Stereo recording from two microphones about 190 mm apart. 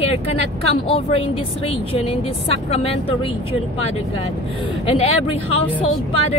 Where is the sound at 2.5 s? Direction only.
30° left (ahead or behind).